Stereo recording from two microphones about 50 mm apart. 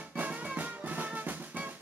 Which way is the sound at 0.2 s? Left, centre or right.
Right.